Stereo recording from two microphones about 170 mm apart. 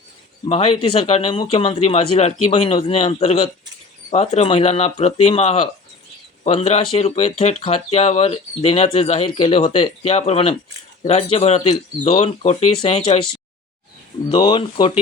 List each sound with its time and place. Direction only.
0.4 s speech: 35° left (ahead or behind)
14.3 s speech: 25° left (ahead or behind)